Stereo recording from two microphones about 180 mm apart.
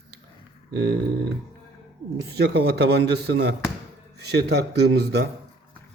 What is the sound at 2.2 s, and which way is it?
Speech, 65° right (ahead or behind).